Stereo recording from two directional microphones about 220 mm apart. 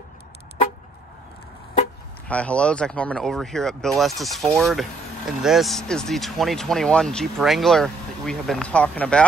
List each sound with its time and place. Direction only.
2.2 s speech: 5° left (ahead or behind)